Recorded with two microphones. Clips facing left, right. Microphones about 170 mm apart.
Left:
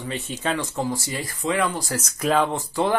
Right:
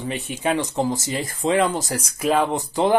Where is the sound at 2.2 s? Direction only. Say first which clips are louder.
Right 1 dB; 5° right (ahead or behind).